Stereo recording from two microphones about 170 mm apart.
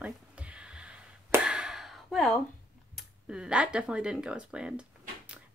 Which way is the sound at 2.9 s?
5° right (ahead or behind).